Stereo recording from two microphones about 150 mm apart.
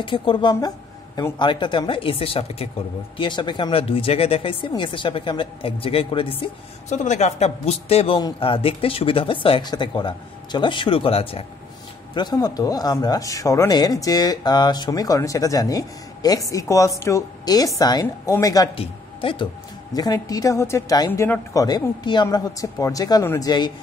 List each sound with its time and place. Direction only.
0.0 s speech: 35° left (ahead or behind)
6.9 s a man's voice: 50° left (ahead or behind)
12.1 s speech: 30° left (ahead or behind)
18.8 s speech: 35° left (ahead or behind)
19.9 s speech: 25° left (ahead or behind)